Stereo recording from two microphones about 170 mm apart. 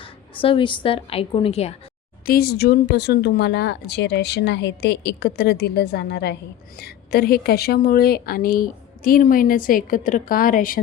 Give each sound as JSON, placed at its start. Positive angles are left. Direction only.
{"t": 0.0, "sound": "a woman's voice", "side_deg": 30}
{"t": 2.2, "sound": "speech", "side_deg": 65}
{"t": 6.7, "sound": "a woman's voice", "side_deg": 65}